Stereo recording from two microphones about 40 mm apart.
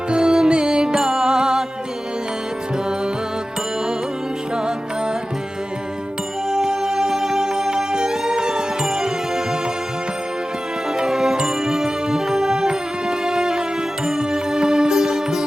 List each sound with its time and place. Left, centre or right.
0.1 s music: centre
6.5 s music: centre
10.9 s music: centre